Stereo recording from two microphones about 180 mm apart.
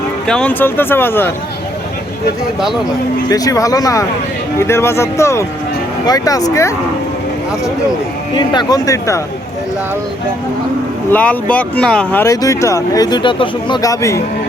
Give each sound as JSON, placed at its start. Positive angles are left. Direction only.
{"t": 0.3, "sound": "speech", "side_deg": 5}
{"t": 3.2, "sound": "speech", "side_deg": 20}
{"t": 8.4, "sound": "speech", "side_deg": 25}
{"t": 11.1, "sound": "speech", "side_deg": 10}